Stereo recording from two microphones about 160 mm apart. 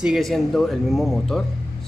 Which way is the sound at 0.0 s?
Centre (ahead or behind).